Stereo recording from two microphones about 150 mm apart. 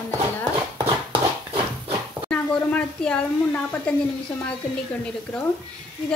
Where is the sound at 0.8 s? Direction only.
35° right (ahead or behind).